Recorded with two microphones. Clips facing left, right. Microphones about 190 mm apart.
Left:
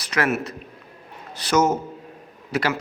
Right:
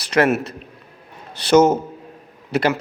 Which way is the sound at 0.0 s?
30° right (ahead or behind).